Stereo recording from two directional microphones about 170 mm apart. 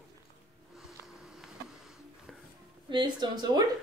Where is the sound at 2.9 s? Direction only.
25° right (ahead or behind).